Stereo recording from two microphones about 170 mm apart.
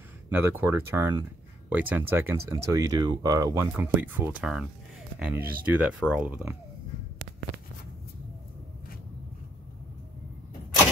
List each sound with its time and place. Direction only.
0.3 s speech: 10° right (ahead or behind)
3.7 s speech: 10° right (ahead or behind)